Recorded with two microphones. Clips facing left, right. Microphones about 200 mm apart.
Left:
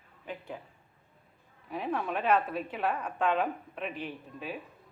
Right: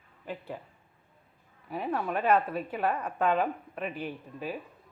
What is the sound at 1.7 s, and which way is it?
A woman's voice, centre (ahead or behind).